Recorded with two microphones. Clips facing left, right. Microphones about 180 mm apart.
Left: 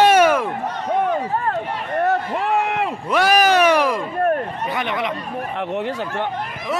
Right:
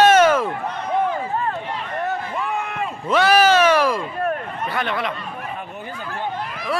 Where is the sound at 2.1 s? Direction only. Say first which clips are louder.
Left 6 dB; 75° left (ahead or behind).